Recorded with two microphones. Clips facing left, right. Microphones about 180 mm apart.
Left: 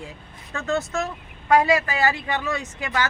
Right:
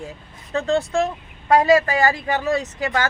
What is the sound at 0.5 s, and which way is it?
Speech, 35° right (ahead or behind).